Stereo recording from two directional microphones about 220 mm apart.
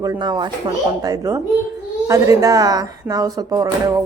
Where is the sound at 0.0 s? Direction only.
15° right (ahead or behind).